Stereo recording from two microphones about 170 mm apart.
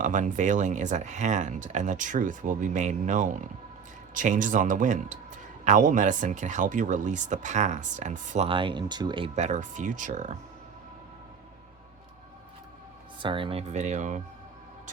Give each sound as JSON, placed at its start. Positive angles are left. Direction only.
{"t": 0.0, "sound": "speech", "side_deg": -45}
{"t": 8.4, "sound": "speech", "side_deg": -30}
{"t": 9.3, "sound": "speech", "side_deg": -45}
{"t": 13.1, "sound": "speech", "side_deg": -30}